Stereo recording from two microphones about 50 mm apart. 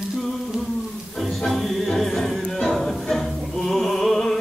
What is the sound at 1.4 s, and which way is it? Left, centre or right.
Music, centre.